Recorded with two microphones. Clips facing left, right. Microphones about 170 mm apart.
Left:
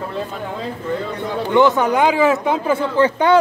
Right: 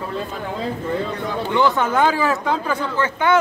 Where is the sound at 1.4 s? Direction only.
20° left (ahead or behind).